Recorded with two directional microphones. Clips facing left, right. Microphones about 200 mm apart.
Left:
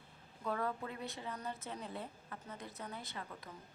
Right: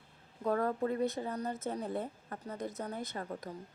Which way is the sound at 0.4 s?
45° right (ahead or behind).